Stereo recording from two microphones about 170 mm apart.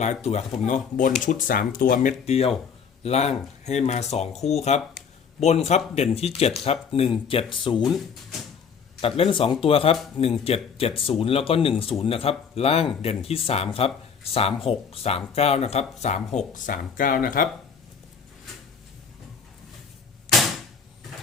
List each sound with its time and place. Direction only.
0.0 s speech: 40° left (ahead or behind)
2.2 s speech: 35° left (ahead or behind)
9.0 s speech: 35° left (ahead or behind)
16.6 s speech: 55° left (ahead or behind)